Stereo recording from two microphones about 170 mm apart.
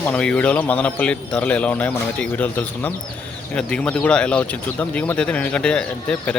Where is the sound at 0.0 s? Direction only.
5° left (ahead or behind).